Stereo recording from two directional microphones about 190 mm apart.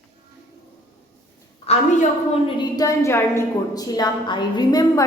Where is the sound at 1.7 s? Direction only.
35° left (ahead or behind).